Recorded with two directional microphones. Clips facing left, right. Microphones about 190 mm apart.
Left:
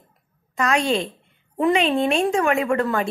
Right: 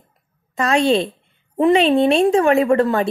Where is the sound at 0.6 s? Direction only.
30° right (ahead or behind).